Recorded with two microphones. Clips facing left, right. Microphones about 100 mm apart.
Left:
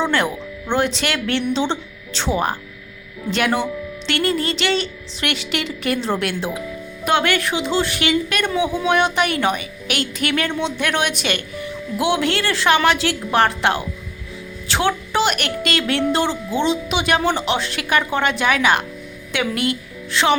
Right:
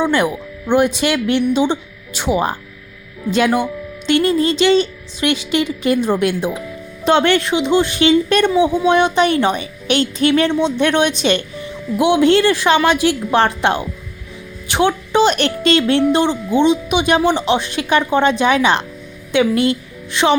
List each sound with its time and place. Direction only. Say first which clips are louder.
0.0 s a woman's voice: right 4 dB; 15° right (ahead or behind)